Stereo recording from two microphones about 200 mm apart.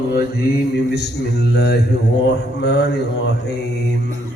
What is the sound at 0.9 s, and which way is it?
Mantra, 55° left (ahead or behind).